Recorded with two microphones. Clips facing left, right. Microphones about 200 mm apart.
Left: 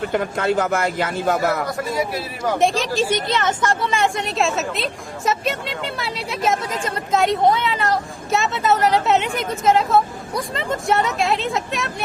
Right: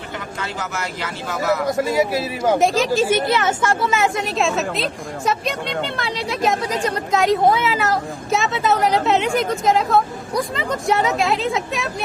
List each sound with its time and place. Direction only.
0.1 s a man's voice: 55° left (ahead or behind)
2.6 s speech: centre (ahead or behind)